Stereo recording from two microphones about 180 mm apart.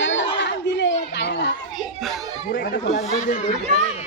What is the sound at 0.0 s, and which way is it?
Chatter, 90° left.